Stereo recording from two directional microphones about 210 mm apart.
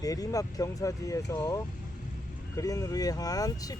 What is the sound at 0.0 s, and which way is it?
Speech, 15° left (ahead or behind).